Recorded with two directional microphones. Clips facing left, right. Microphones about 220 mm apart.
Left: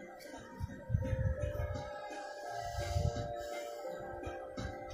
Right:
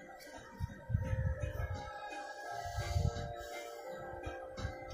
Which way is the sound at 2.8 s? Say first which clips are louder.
Left 3 dB; 25° left (ahead or behind).